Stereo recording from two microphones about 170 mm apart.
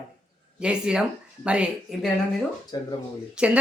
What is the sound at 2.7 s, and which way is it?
Speech, 25° left (ahead or behind).